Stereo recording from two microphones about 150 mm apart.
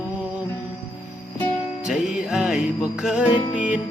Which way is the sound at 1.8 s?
5° right (ahead or behind).